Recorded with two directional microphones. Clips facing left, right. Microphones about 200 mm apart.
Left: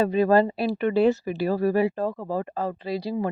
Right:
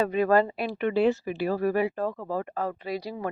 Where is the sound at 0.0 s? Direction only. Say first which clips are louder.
Left 3 dB; 30° left (ahead or behind).